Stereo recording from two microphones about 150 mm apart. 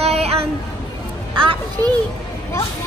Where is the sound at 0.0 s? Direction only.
45° right (ahead or behind).